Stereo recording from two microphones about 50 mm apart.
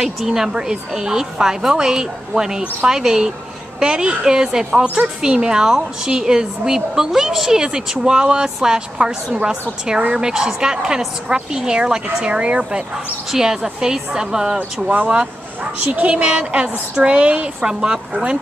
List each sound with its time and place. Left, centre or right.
0.0 s a woman's voice: centre
15.8 s a child's voice: right
17.6 s a woman's voice: centre